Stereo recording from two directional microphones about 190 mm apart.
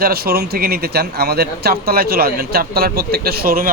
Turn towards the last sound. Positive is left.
turn(degrees=-50)  # may be behind; listen again after turning